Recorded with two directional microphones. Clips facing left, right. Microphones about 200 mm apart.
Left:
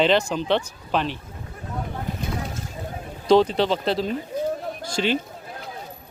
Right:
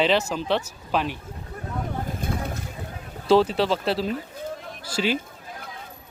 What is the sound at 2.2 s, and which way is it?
Boat, 50° right (ahead or behind).